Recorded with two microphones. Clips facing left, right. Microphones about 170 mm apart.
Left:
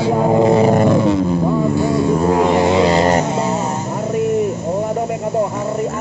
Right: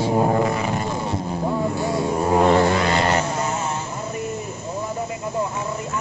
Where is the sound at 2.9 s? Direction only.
40° left (ahead or behind).